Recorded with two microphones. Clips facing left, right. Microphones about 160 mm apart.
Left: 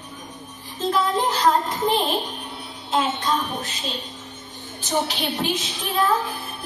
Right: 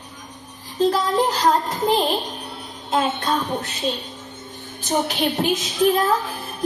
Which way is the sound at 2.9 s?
65° right (ahead or behind).